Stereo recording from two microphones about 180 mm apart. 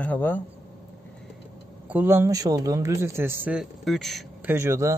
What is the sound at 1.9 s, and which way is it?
A man's voice, 10° right (ahead or behind).